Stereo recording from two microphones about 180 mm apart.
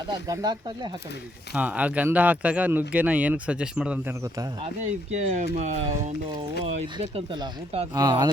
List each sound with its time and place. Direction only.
1.5 s speech: 5° right (ahead or behind)
4.8 s speech: 40° right (ahead or behind)
6.7 s speech: 35° right (ahead or behind)
7.9 s speech: 20° right (ahead or behind)